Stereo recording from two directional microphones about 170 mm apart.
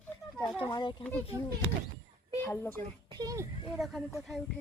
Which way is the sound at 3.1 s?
20° right (ahead or behind).